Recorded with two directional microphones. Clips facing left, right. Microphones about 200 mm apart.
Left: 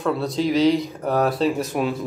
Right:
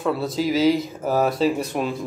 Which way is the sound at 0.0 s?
Centre (ahead or behind).